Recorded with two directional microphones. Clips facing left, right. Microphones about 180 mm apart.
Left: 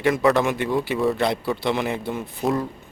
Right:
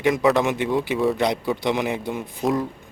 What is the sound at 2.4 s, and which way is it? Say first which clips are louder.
Speech: right 1 dB; centre (ahead or behind).